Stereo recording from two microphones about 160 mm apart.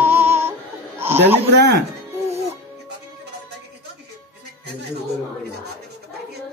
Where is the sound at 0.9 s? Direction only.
15° right (ahead or behind).